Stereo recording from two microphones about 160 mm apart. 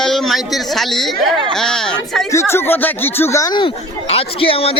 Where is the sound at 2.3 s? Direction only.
15° left (ahead or behind).